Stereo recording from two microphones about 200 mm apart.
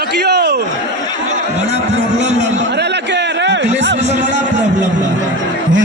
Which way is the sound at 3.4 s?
60° right (ahead or behind).